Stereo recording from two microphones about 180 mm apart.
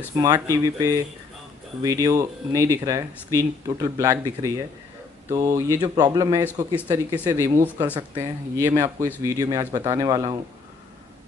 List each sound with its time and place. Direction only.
0.1 s speech: 20° right (ahead or behind)